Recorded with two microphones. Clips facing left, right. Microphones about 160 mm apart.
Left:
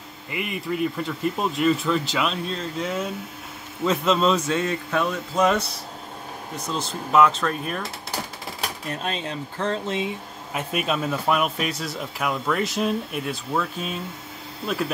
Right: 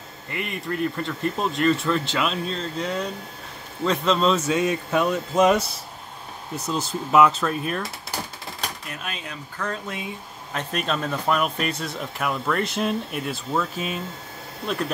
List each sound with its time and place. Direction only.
0.3 s speech: 5° left (ahead or behind)
4.5 s speech: 15° right (ahead or behind)
6.7 s speech: 5° right (ahead or behind)
8.8 s speech: 30° left (ahead or behind)
10.5 s speech: 10° left (ahead or behind)